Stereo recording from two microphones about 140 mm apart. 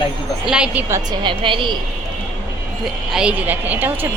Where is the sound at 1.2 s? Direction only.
35° right (ahead or behind).